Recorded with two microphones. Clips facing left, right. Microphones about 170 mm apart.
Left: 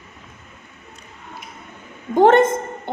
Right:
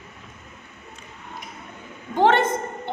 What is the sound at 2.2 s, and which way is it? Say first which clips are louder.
Speech: left 6 dB; 45° left (ahead or behind).